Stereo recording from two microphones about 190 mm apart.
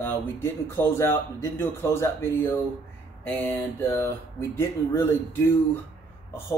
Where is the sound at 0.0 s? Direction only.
10° left (ahead or behind).